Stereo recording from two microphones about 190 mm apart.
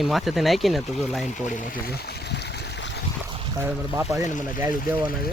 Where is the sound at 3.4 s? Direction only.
25° right (ahead or behind).